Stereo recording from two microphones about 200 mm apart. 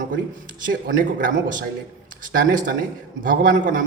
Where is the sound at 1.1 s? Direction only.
45° right (ahead or behind).